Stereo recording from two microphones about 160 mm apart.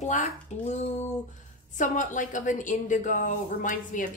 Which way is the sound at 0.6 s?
45° left (ahead or behind).